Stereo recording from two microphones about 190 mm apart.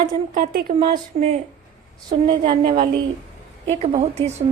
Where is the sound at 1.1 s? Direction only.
30° right (ahead or behind).